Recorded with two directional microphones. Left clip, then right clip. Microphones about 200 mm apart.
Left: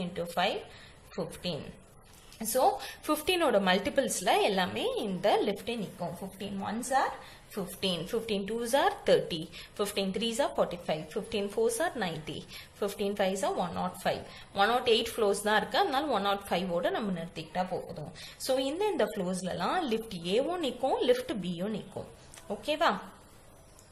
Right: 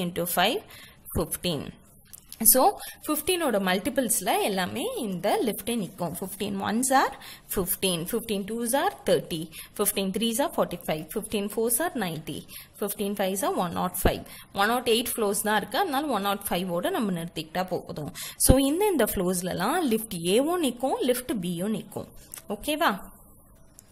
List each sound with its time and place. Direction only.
0.0 s a woman's voice: 45° right (ahead or behind)